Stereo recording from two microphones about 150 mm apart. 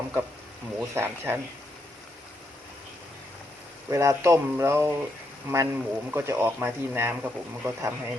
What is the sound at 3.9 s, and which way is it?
Speech, 20° right (ahead or behind).